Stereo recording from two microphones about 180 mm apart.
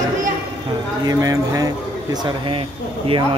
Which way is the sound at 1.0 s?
20° right (ahead or behind).